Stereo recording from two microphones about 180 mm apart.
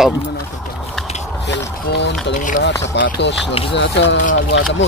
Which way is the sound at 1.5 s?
70° left (ahead or behind).